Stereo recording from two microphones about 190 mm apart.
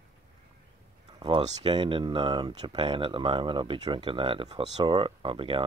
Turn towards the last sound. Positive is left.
turn(degrees=-25)  # may be behind; listen again after turning